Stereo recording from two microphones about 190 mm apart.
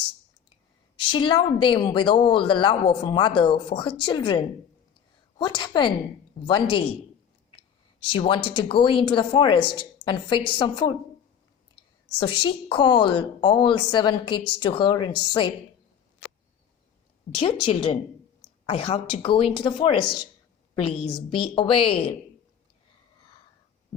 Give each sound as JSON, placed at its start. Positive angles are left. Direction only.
{"t": 0.9, "sound": "a woman's voice", "side_deg": 25}
{"t": 8.1, "sound": "a woman's voice", "side_deg": 25}
{"t": 12.2, "sound": "a woman's voice", "side_deg": 25}
{"t": 17.4, "sound": "a woman's voice", "side_deg": 25}